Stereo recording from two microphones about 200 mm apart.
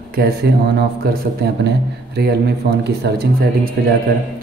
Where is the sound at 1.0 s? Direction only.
55° right (ahead or behind).